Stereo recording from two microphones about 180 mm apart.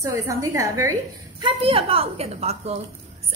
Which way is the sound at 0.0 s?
20° right (ahead or behind).